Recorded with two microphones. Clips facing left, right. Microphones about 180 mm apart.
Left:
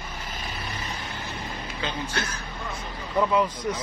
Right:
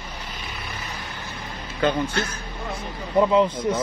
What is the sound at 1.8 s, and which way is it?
Speech, 50° right (ahead or behind).